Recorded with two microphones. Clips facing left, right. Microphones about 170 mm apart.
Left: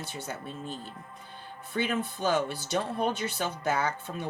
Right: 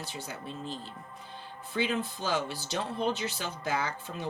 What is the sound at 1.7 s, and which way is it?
Speech, 50° left (ahead or behind).